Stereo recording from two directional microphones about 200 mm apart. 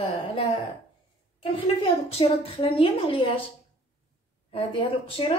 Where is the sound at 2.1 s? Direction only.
30° left (ahead or behind).